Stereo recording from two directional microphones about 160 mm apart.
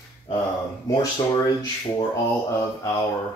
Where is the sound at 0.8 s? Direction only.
25° left (ahead or behind).